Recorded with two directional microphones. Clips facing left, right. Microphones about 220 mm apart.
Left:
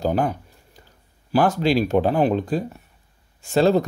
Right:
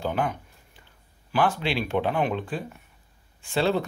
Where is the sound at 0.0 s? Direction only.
40° left (ahead or behind).